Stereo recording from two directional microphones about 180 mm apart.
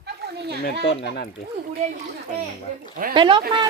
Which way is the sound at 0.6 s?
65° left (ahead or behind).